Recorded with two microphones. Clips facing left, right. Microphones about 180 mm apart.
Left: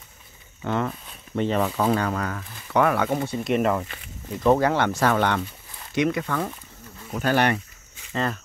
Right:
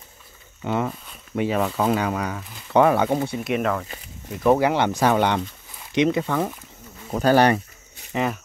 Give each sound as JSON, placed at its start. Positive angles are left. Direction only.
{"t": 0.7, "sound": "speech", "side_deg": -10}
{"t": 2.7, "sound": "speech", "side_deg": -25}
{"t": 3.1, "sound": "speech", "side_deg": -10}
{"t": 4.4, "sound": "speech", "side_deg": -10}
{"t": 7.1, "sound": "speech", "side_deg": -35}
{"t": 8.1, "sound": "speech", "side_deg": -15}